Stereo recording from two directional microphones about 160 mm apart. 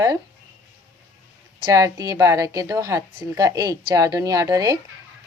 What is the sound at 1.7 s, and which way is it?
A woman's voice, 20° right (ahead or behind).